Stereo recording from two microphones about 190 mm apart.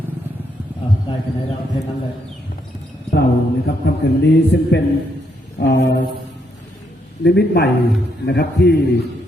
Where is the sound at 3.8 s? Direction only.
60° left (ahead or behind).